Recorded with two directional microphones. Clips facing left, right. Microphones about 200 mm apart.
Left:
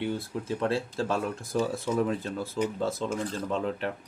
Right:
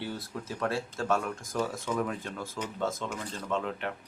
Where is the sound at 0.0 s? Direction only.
25° left (ahead or behind).